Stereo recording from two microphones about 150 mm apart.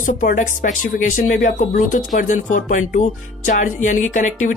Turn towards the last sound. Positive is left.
turn(degrees=55)  # may be behind; listen again after turning